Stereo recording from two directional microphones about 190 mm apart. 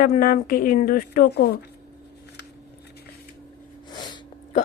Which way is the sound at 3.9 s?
20° left (ahead or behind).